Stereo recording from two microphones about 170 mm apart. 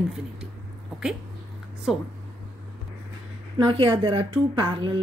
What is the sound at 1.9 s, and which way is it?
Speech, centre (ahead or behind).